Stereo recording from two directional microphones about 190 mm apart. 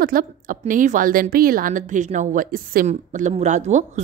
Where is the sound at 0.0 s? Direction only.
50° right (ahead or behind).